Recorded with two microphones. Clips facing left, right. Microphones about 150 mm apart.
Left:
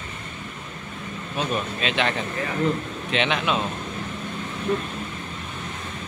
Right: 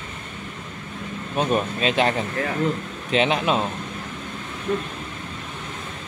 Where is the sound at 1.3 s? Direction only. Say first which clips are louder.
Right 5 dB; 40° right (ahead or behind).